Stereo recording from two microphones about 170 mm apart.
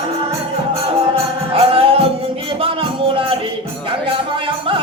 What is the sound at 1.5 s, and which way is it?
Music, 35° right (ahead or behind).